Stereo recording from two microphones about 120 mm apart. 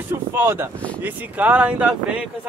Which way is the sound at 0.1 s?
20° right (ahead or behind).